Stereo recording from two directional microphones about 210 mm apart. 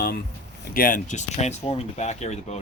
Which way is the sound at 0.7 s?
40° left (ahead or behind).